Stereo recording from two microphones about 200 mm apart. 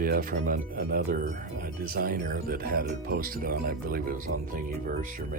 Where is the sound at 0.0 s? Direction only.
45° right (ahead or behind).